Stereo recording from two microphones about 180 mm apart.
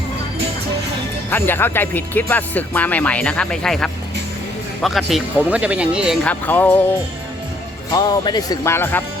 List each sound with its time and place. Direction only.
1.3 s speech: 10° left (ahead or behind); by 6.1 s 5° right (ahead or behind)
6.2 s speech: 10° left (ahead or behind)
7.9 s speech: 25° left (ahead or behind)